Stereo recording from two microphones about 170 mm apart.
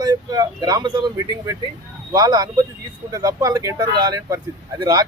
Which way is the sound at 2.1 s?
20° right (ahead or behind).